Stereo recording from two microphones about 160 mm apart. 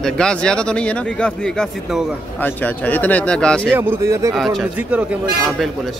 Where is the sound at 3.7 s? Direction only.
15° right (ahead or behind).